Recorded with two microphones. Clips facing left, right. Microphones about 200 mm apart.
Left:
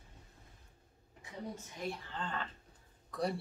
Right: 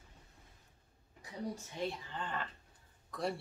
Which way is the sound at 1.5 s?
30° right (ahead or behind).